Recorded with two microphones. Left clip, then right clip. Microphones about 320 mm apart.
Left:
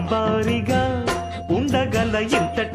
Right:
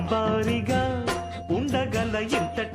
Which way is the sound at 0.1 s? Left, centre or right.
Left.